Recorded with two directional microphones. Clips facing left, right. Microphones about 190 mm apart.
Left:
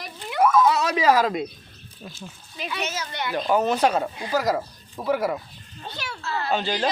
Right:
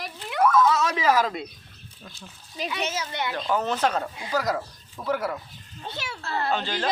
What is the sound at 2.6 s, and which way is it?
Speech, 40° right (ahead or behind).